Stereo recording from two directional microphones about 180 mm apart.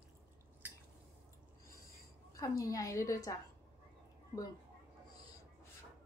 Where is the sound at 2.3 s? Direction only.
20° left (ahead or behind).